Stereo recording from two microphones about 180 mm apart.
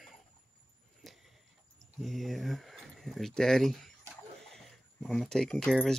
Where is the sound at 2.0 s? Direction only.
Centre (ahead or behind).